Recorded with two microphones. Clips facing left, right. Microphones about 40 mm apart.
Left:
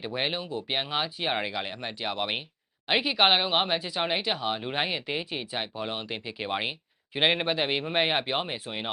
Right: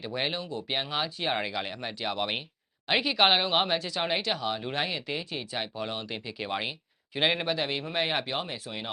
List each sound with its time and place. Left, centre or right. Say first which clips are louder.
0.0 s speech: left 1 dB; centre